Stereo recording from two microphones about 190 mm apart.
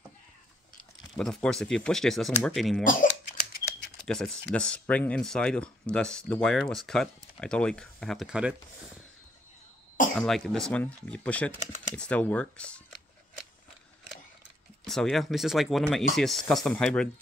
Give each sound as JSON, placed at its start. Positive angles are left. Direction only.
{"t": 1.1, "sound": "speech", "side_deg": 5}
{"t": 2.8, "sound": "speech", "side_deg": 45}
{"t": 4.1, "sound": "speech", "side_deg": 5}
{"t": 10.1, "sound": "speech", "side_deg": 0}
{"t": 14.9, "sound": "speech", "side_deg": 0}